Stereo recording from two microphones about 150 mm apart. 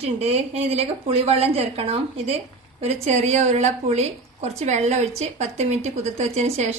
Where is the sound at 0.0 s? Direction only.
45° right (ahead or behind).